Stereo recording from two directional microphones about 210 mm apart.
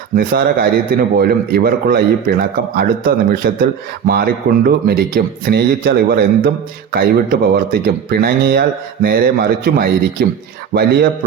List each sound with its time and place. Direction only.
0.2 s a man's voice: 45° right (ahead or behind)